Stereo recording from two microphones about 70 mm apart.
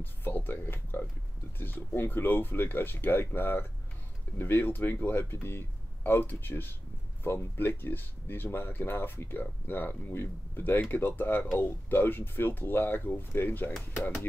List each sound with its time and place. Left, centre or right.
0.0 s speech: left